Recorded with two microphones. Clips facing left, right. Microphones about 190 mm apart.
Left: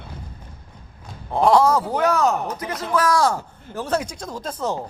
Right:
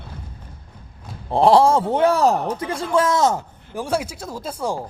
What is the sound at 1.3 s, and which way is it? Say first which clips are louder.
A man's voice: right 2 dB; 30° right (ahead or behind).